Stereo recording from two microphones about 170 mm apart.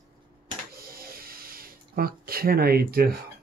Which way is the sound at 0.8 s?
60° right (ahead or behind).